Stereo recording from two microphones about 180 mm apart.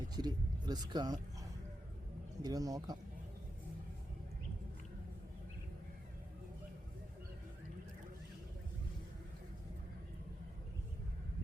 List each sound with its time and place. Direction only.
0.2 s speech: 25° right (ahead or behind)